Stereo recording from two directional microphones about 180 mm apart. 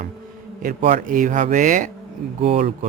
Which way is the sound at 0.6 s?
45° right (ahead or behind).